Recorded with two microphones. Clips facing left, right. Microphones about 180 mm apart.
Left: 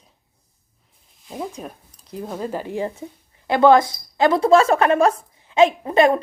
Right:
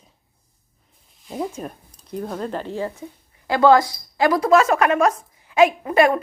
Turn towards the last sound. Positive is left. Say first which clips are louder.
# left 1 dB
turn(degrees=25)  # may be behind; listen again after turning